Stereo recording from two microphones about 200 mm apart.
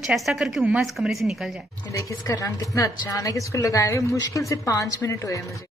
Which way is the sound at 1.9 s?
15° left (ahead or behind).